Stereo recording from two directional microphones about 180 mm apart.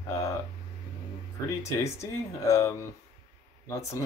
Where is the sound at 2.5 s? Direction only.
15° left (ahead or behind).